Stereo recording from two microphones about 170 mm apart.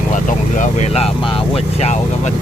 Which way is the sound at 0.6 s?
40° left (ahead or behind).